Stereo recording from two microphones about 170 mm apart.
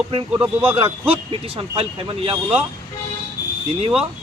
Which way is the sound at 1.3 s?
35° right (ahead or behind).